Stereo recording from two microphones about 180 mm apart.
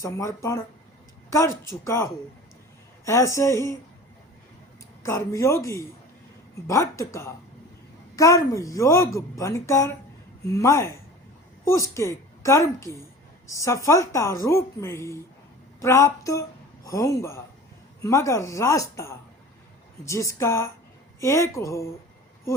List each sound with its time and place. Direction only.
0.0 s a woman's voice: 15° left (ahead or behind)
5.0 s a woman's voice: 15° left (ahead or behind)